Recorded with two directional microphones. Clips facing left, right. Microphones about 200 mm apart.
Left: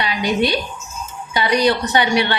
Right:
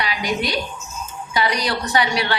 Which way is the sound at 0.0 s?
25° left (ahead or behind).